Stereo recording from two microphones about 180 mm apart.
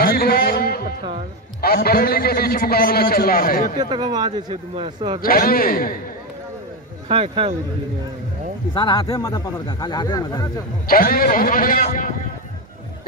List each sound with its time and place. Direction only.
0.0 s a sound: 55° left (ahead or behind)
1.6 s a man's voice: 60° left (ahead or behind)
3.7 s a man's voice: 25° right (ahead or behind)
5.2 s speech: 55° left (ahead or behind)
7.1 s a man's voice: 30° right (ahead or behind)
8.7 s speech: 25° left (ahead or behind)
10.9 s speech: 55° left (ahead or behind)